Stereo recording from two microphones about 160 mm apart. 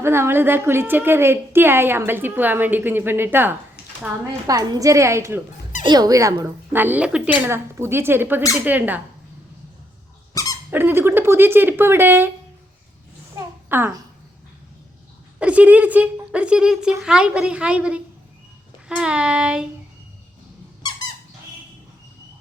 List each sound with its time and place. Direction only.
0.0 s a woman's voice: 15° right (ahead or behind)
3.8 s a sound: 90° left
4.4 s a woman's voice: 20° right (ahead or behind)
10.3 s squeak: 20° left (ahead or behind)
10.7 s a woman's voice: 15° right (ahead or behind)
13.3 s a sound: 15° right (ahead or behind)
15.4 s a woman's voice: 10° right (ahead or behind)
18.9 s child singing: 5° right (ahead or behind)